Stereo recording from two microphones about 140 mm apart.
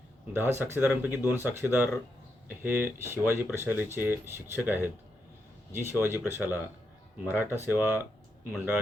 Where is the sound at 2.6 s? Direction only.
15° right (ahead or behind).